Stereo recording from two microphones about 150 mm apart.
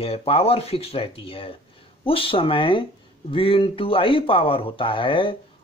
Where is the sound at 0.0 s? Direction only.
40° left (ahead or behind).